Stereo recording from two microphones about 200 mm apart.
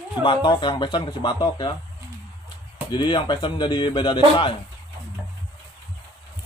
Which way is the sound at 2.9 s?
25° left (ahead or behind).